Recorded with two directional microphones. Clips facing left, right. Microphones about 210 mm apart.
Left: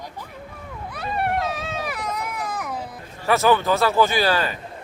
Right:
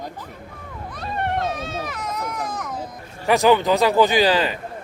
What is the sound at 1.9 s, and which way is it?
Baby cry, 10° left (ahead or behind).